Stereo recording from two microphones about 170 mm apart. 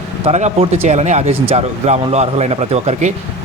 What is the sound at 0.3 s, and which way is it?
A man's voice, 40° right (ahead or behind).